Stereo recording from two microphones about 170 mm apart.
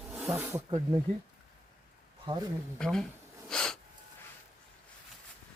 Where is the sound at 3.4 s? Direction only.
5° left (ahead or behind).